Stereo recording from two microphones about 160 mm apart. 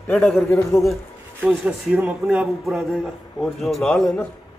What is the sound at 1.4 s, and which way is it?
A man's voice, 10° right (ahead or behind).